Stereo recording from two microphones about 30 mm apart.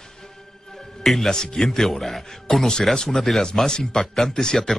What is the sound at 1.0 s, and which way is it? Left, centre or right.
Speech, centre.